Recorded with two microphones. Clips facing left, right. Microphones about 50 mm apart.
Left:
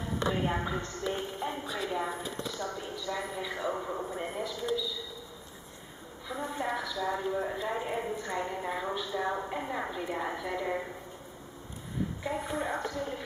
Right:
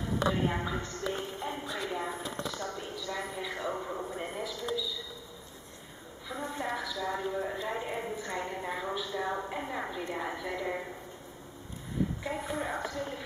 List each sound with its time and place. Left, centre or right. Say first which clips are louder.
0.3 s a woman's voice: left 2 dB; centre
1.6 s speech: left 1 dB; left
1.9 s a woman's voice: left 2 dB; centre
6.2 s a woman's voice: left 2 dB; centre
12.2 s a woman's voice: left 1 dB; centre